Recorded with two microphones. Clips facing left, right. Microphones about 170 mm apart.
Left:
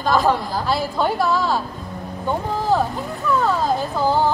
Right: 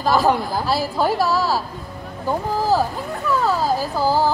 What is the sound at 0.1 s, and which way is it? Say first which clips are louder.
Speech: right 1 dB; 5° right (ahead or behind).